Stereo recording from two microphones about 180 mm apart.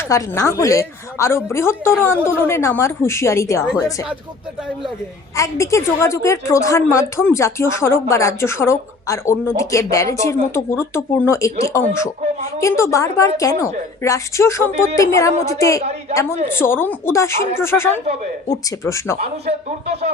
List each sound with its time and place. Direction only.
0.1 s a woman's voice: 15° left (ahead or behind)
5.4 s a woman's voice: 15° left (ahead or behind)
15.8 s speech: 35° right (ahead or behind)
16.5 s a woman's voice: 10° left (ahead or behind)
19.2 s speech: 35° right (ahead or behind)